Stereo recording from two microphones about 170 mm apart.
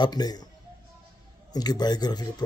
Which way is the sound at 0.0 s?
25° left (ahead or behind).